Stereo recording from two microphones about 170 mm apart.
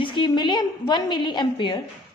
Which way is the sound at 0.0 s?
30° left (ahead or behind).